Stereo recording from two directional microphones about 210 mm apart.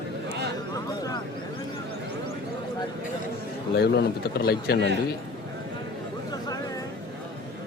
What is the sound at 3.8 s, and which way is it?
Speech, 50° left (ahead or behind).